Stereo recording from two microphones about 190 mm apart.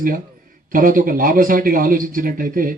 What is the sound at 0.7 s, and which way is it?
Speech, 45° right (ahead or behind).